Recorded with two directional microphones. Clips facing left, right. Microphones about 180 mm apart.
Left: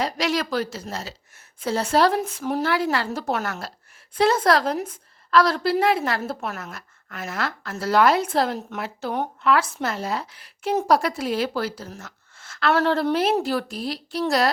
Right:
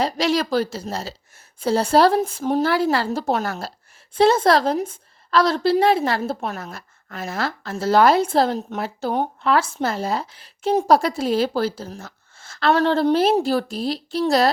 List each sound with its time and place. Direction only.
0.0 s a woman's voice: 30° right (ahead or behind)